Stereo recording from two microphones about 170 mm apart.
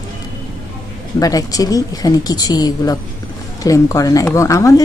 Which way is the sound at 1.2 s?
20° left (ahead or behind).